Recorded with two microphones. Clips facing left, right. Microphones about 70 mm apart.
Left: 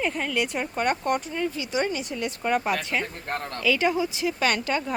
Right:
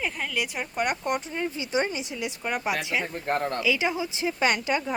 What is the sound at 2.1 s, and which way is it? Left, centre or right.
Speech, centre.